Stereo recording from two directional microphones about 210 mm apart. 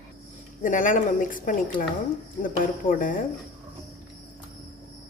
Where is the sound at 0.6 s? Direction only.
40° left (ahead or behind).